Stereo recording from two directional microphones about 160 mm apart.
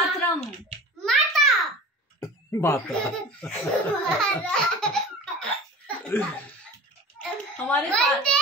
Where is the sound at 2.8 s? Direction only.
5° left (ahead or behind).